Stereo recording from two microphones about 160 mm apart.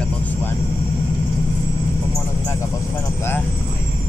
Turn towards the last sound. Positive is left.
turn(degrees=15)  # may be behind; listen again after turning